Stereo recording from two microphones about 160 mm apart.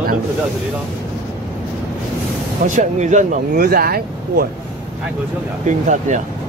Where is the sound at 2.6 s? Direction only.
50° right (ahead or behind); by 4.4 s 70° right (ahead or behind).